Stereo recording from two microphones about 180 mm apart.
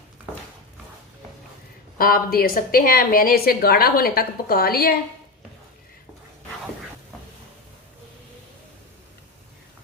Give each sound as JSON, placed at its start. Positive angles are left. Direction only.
{"t": 2.0, "sound": "a woman's voice", "side_deg": 55}